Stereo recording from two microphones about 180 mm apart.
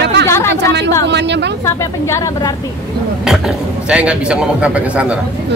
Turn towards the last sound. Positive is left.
turn(degrees=-5)  # may be behind; listen again after turning